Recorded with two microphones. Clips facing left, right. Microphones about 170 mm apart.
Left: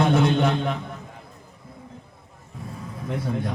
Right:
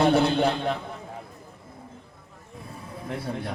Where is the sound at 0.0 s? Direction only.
35° right (ahead or behind).